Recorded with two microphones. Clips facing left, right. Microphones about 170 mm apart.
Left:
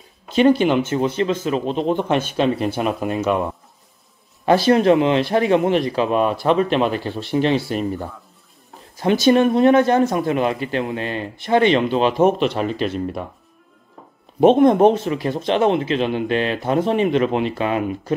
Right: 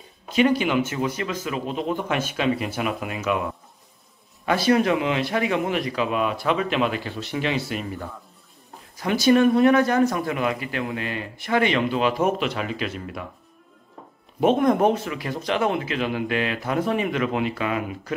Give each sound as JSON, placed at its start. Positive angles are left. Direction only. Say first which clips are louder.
{"t": 0.3, "sound": "speech", "louder": "left 5 dB", "side_deg": 30}
{"t": 8.9, "sound": "speech", "louder": "left 3 dB", "side_deg": 25}
{"t": 14.4, "sound": "speech", "louder": "left 6 dB", "side_deg": 25}